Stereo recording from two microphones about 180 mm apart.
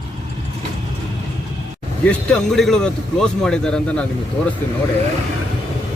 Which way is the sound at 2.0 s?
5° left (ahead or behind).